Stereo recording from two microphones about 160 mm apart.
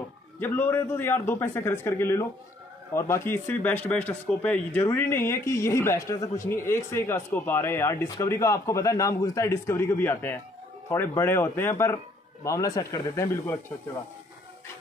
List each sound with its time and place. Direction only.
0.4 s speech: 15° left (ahead or behind)